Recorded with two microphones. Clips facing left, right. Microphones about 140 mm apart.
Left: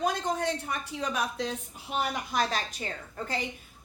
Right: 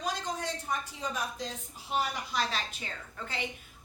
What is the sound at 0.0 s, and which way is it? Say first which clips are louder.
A woman's voice: left 6 dB; 55° left (ahead or behind).